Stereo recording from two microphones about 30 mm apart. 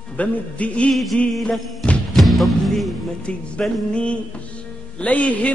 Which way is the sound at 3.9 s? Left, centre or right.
Left.